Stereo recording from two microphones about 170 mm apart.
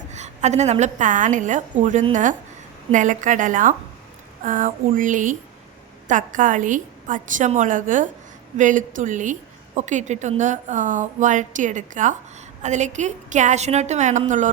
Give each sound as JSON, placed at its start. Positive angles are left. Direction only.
{"t": 0.1, "sound": "a woman's voice", "side_deg": -45}